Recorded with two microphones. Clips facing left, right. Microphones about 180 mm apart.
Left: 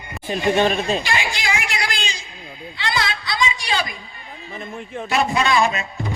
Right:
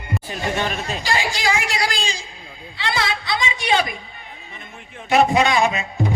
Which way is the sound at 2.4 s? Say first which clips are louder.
Left 4 dB; 25° left (ahead or behind).